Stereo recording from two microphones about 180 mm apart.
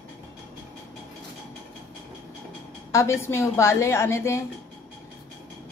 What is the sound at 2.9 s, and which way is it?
A woman's voice, 15° left (ahead or behind).